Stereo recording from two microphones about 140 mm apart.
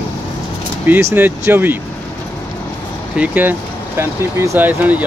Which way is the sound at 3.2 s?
10° right (ahead or behind).